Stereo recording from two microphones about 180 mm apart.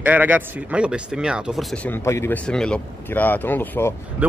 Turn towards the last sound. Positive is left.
turn(degrees=-10)  # may be behind; listen again after turning